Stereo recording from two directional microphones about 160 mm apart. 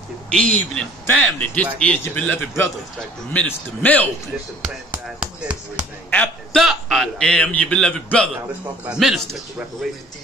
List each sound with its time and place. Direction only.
0.3 s a man's voice: 5° left (ahead or behind)
5.2 s speech: 5° right (ahead or behind)
6.0 s a man's voice: 10° left (ahead or behind)
6.5 s a man's voice: centre (ahead or behind)